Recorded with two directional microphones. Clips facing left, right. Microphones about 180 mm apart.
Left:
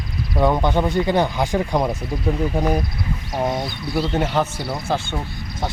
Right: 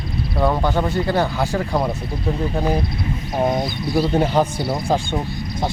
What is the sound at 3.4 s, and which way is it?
Speech, 15° right (ahead or behind).